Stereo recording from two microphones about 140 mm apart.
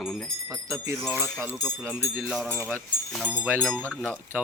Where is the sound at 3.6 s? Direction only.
5° left (ahead or behind).